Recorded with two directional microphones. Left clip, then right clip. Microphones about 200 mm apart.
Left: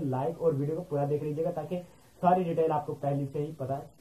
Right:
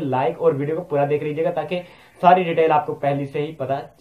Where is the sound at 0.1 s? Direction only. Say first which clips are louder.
Right 11 dB; 30° right (ahead or behind).